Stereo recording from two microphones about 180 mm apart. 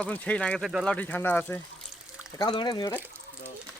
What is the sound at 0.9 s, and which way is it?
Speech, 10° left (ahead or behind).